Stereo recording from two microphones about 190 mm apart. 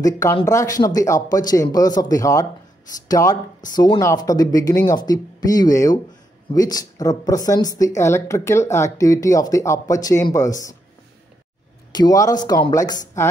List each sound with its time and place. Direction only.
0.0 s speech: 15° left (ahead or behind)
11.9 s speech: 20° left (ahead or behind)